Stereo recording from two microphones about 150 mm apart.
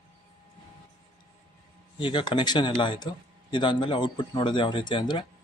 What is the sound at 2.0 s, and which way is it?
Speech, 30° left (ahead or behind).